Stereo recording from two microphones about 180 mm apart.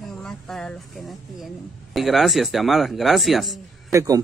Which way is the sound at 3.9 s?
20° right (ahead or behind).